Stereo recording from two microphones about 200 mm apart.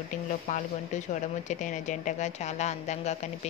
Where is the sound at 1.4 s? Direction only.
40° left (ahead or behind).